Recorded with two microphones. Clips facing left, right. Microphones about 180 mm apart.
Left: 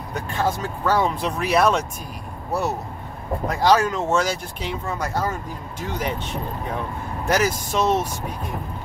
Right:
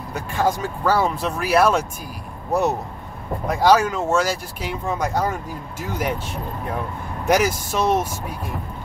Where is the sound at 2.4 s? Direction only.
20° right (ahead or behind).